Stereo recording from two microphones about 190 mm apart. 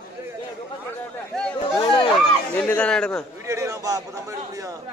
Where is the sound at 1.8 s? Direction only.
25° left (ahead or behind).